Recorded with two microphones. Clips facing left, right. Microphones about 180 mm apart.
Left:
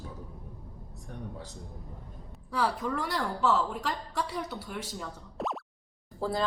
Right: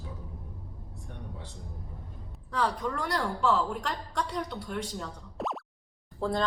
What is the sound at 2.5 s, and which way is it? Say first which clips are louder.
A woman's voice: even; 5° left (ahead or behind).